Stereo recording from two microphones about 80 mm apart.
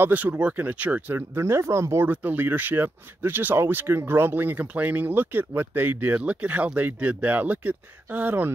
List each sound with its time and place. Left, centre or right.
0.0 s speech: centre
1.1 s speech: right
2.0 s speech: right